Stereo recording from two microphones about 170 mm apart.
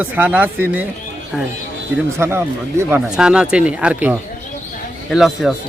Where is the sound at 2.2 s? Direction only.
15° right (ahead or behind).